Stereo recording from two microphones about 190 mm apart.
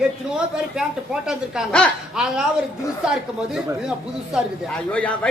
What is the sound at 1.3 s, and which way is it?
Speech, centre (ahead or behind).